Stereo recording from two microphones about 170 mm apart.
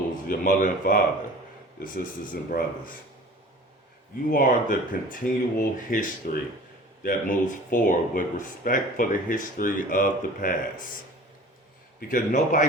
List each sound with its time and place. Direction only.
0.3 s speech: 55° left (ahead or behind)
4.3 s speech: 50° left (ahead or behind)
11.9 s speech: 55° left (ahead or behind)